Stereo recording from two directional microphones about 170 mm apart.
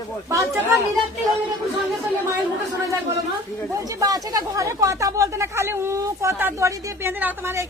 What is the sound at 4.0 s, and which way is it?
Speech, 20° right (ahead or behind).